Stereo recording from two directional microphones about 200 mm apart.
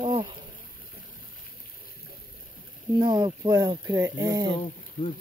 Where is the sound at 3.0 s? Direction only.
20° right (ahead or behind).